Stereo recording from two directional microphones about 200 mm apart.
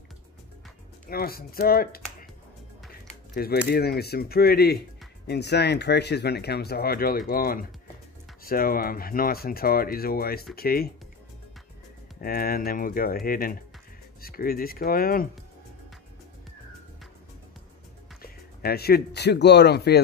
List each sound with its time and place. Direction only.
1.0 s speech: 50° left (ahead or behind)
12.2 s speech: 45° left (ahead or behind)
18.2 s speech: 50° left (ahead or behind)